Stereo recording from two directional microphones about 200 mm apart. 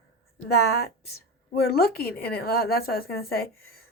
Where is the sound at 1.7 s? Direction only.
50° left (ahead or behind).